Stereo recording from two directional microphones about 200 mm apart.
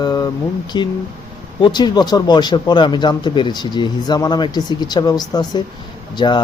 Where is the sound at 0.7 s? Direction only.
20° left (ahead or behind).